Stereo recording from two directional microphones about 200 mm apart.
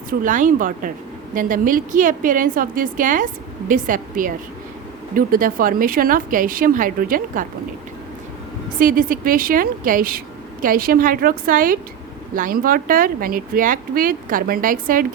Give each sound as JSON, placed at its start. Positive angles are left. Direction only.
{"t": 0.1, "sound": "a woman's voice", "side_deg": -40}
{"t": 8.8, "sound": "a woman's voice", "side_deg": -45}